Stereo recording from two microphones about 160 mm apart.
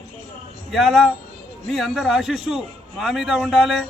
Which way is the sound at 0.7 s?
Centre (ahead or behind).